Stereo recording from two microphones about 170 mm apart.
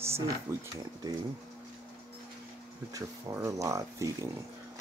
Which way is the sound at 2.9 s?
20° right (ahead or behind).